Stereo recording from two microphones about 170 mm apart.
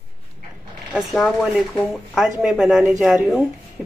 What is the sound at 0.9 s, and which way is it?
A woman's voice, centre (ahead or behind).